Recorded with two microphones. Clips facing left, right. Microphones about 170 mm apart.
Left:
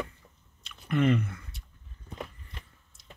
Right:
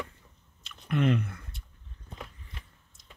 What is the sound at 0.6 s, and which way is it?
Chewing, centre (ahead or behind).